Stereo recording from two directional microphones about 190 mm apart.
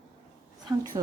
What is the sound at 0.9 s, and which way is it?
Speech, 20° right (ahead or behind).